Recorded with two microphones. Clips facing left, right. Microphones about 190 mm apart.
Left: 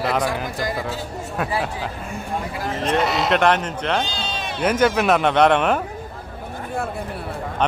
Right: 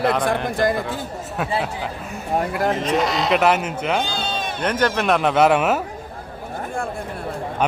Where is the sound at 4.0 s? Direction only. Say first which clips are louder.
Right 2 dB; 55° right (ahead or behind).